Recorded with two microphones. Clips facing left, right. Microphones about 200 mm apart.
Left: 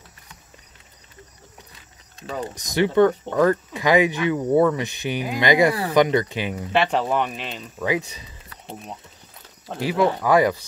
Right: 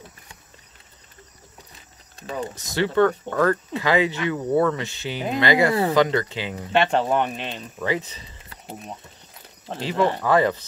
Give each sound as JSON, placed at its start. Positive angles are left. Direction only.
{"t": 2.5, "sound": "speech", "side_deg": 15}
{"t": 6.7, "sound": "speech", "side_deg": 5}
{"t": 9.7, "sound": "speech", "side_deg": 10}